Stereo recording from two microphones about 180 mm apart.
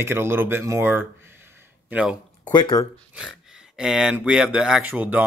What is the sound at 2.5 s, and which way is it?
Speech, 25° left (ahead or behind).